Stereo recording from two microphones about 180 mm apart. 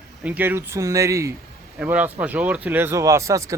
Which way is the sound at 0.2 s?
10° right (ahead or behind).